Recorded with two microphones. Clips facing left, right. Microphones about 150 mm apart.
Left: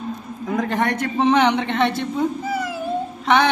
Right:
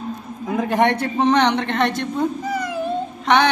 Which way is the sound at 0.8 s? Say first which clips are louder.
Right 4 dB; 30° right (ahead or behind).